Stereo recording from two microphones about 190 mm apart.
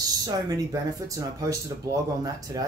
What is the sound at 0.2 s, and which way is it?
Speech, 20° right (ahead or behind).